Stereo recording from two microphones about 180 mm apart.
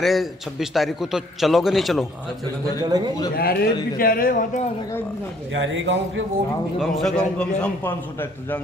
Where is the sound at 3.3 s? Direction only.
60° left (ahead or behind).